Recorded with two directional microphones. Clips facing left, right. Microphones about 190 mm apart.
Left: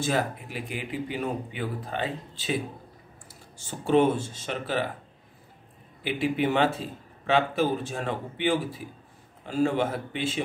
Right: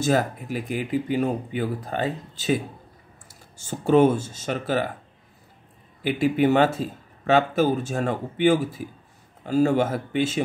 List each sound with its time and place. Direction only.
0.0 s speech: 45° right (ahead or behind)
6.0 s speech: 45° right (ahead or behind)